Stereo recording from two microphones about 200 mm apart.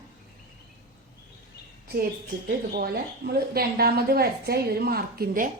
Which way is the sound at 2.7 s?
50° right (ahead or behind).